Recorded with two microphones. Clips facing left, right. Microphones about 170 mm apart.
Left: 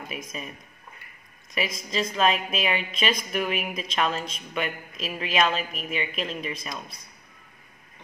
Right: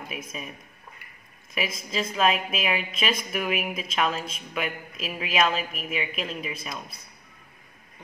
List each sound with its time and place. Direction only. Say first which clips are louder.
0.1 s a woman's voice: even; centre (ahead or behind)
1.5 s a woman's voice: left 1 dB; 5° right (ahead or behind)